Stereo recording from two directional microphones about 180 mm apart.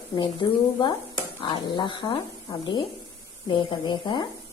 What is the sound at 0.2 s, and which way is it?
A woman's voice, 25° left (ahead or behind).